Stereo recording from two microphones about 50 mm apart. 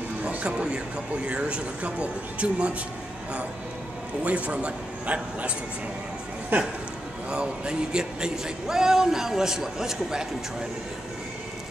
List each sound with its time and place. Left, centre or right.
0.3 s speech: right
4.2 s speech: right
7.2 s speech: centre